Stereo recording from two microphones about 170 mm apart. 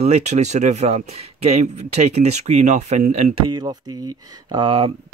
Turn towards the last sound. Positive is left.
turn(degrees=-35)  # may be behind; listen again after turning